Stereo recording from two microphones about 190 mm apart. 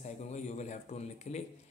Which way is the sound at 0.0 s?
35° left (ahead or behind).